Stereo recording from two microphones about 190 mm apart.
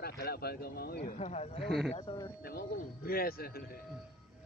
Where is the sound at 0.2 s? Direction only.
55° left (ahead or behind).